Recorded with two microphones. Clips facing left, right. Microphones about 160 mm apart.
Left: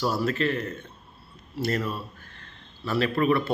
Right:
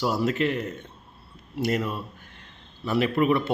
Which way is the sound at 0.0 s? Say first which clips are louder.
Right 1 dB; 20° right (ahead or behind).